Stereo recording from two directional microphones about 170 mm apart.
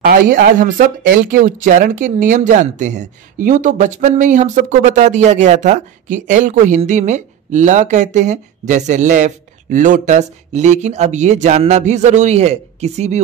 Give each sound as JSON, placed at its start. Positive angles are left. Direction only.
{"t": 0.0, "sound": "speech", "side_deg": -60}